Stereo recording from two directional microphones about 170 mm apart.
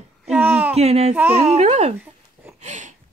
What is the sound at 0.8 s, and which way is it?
A child's voice, 40° right (ahead or behind).